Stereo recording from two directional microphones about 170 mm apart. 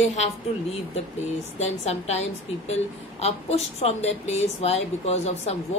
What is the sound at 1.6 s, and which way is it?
A woman's voice, 40° left (ahead or behind).